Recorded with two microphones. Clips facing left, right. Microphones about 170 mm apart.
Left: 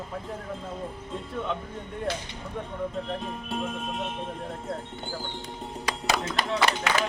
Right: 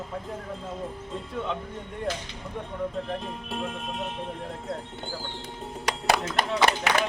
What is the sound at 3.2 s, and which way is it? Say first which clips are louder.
Speech: left 1 dB; centre (ahead or behind).